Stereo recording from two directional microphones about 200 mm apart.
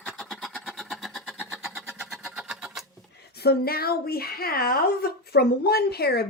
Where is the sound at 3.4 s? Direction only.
50° left (ahead or behind).